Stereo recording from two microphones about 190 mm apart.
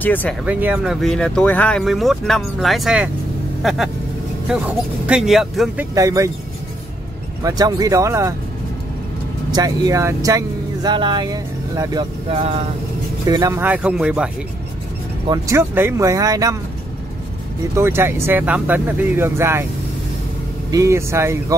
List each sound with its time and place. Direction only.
0.0 s speech: 10° left (ahead or behind)
0.5 s speech: 5° right (ahead or behind)
5.9 s speech: 15° right (ahead or behind)
7.4 s speech: 20° right (ahead or behind)
9.5 s speech: 20° right (ahead or behind)
12.3 s speech: 35° right (ahead or behind)
13.3 s speech: 15° right (ahead or behind)
15.2 s speech: 20° right (ahead or behind)
17.7 s speech: 10° right (ahead or behind)
20.7 s speech: 15° right (ahead or behind)